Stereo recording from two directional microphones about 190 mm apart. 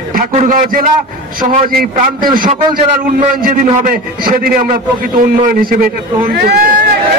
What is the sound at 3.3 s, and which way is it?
A man's voice, 50° right (ahead or behind).